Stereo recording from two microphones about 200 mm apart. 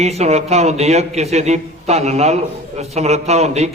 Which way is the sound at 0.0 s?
35° right (ahead or behind).